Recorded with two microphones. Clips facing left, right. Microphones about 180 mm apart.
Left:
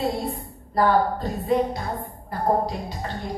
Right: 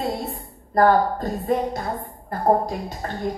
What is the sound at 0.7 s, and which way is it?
A woman's voice, 45° right (ahead or behind).